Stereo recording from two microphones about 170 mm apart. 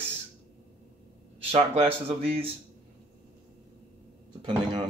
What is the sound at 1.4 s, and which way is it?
Speech, 35° right (ahead or behind).